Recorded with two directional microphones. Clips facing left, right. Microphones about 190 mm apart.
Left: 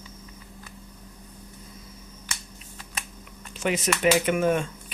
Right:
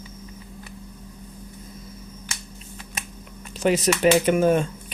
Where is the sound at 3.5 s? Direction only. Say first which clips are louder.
Right 6 dB; 35° right (ahead or behind).